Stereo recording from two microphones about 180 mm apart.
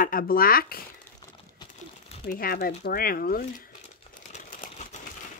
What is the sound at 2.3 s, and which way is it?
Speech, 55° left (ahead or behind).